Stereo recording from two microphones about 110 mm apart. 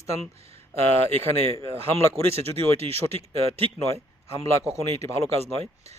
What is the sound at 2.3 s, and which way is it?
Speech, 65° right (ahead or behind).